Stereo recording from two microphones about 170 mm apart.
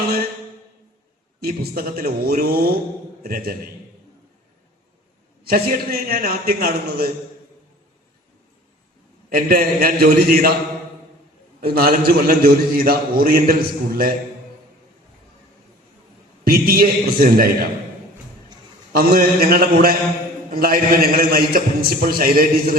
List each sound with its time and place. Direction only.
1.4 s a man's voice: 60° right (ahead or behind)
5.5 s a man's voice: 60° right (ahead or behind)
9.3 s a man's voice: 60° right (ahead or behind)
11.6 s a man's voice: 65° right (ahead or behind)
16.4 s a man's voice: 60° right (ahead or behind)
18.9 s a man's voice: 60° right (ahead or behind)